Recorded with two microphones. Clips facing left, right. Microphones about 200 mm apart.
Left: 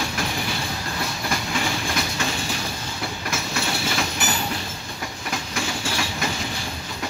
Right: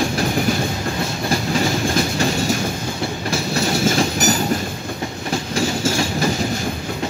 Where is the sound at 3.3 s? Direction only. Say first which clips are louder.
Right 8 dB; 35° right (ahead or behind).